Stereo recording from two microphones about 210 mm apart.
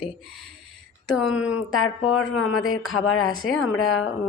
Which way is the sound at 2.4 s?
80° left.